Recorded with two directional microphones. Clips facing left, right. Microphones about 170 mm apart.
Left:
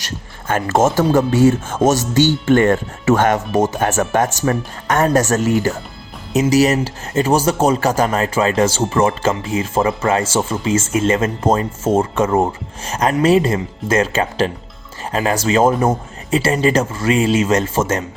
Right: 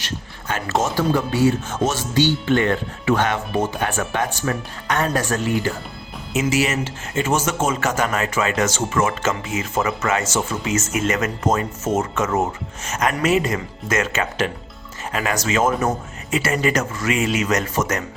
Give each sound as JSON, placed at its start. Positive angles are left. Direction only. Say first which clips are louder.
{"t": 0.0, "sound": "speech", "louder": "left 1 dB", "side_deg": 50}